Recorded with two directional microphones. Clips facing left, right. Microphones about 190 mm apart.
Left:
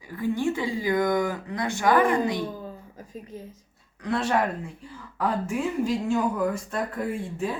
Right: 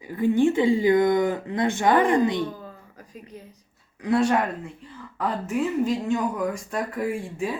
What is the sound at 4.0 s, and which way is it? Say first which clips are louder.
Speech: right 3 dB; centre (ahead or behind).